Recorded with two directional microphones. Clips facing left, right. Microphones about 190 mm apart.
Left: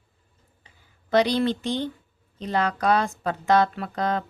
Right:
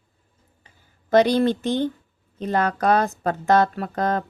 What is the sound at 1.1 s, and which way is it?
Speech, 50° right (ahead or behind).